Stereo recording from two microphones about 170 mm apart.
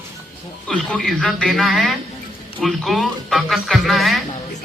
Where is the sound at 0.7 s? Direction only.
5° left (ahead or behind).